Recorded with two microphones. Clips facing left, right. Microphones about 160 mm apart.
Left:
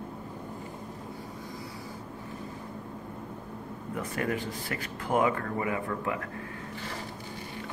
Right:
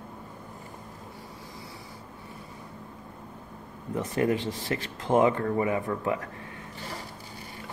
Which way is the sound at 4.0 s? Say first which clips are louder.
Right 5 dB; 20° right (ahead or behind).